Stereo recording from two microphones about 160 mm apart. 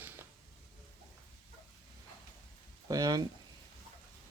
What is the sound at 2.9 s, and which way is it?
Speech, 20° right (ahead or behind).